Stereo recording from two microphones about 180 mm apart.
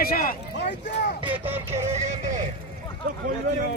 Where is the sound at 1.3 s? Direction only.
10° right (ahead or behind).